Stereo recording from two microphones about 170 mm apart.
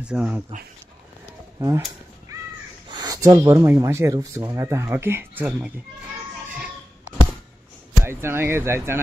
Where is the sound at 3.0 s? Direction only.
20° right (ahead or behind).